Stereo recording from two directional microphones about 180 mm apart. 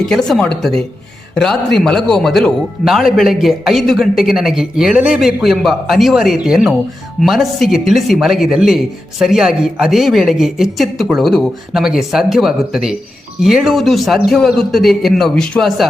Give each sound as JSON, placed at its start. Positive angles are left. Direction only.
{"t": 0.0, "sound": "speech", "side_deg": 0}